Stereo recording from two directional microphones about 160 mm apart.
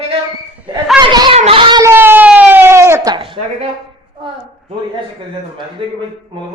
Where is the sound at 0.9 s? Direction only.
25° right (ahead or behind).